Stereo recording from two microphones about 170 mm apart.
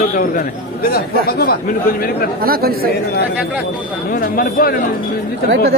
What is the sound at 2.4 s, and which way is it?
Speech, 60° right (ahead or behind).